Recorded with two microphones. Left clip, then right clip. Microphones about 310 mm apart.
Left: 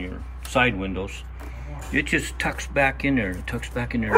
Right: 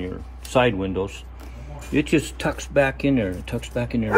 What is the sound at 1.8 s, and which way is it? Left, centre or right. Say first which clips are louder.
Speech: right 2 dB; centre.